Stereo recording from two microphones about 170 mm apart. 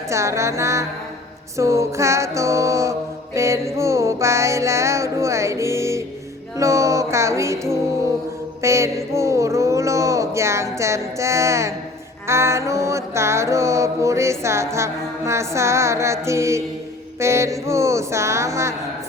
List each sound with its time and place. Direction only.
0.1 s music: 15° right (ahead or behind)